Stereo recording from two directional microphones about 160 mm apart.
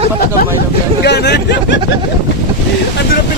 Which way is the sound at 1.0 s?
90° left.